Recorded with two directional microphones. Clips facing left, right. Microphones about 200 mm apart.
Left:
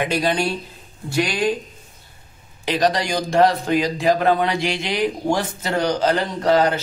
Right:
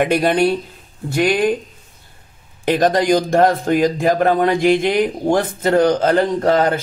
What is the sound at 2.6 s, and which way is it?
A man's voice, 50° right (ahead or behind).